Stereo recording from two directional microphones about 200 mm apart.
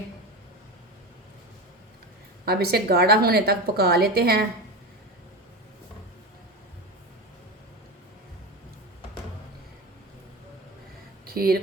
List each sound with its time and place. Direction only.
2.4 s a woman's voice: 50° right (ahead or behind)
11.3 s speech: 50° right (ahead or behind)